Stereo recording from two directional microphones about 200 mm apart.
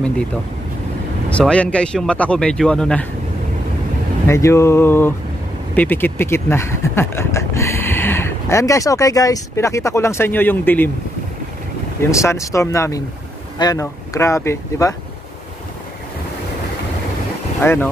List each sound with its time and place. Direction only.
1.3 s speech: 5° left (ahead or behind)
4.3 s speech: 15° left (ahead or behind)
12.0 s speech: 15° left (ahead or behind)
17.6 s speech: 10° left (ahead or behind)